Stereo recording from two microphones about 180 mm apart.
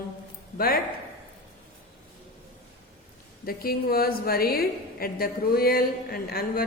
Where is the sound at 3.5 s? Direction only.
55° left (ahead or behind).